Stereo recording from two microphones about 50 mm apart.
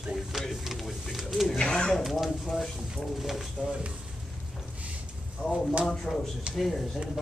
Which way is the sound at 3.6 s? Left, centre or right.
Centre.